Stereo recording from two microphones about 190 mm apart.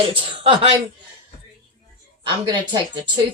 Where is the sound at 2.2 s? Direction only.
25° right (ahead or behind).